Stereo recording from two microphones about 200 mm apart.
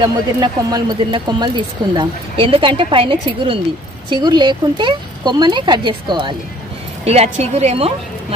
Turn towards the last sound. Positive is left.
turn(degrees=-30)  # may be behind; listen again after turning